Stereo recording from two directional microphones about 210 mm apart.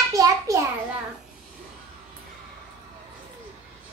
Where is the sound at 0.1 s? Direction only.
15° right (ahead or behind).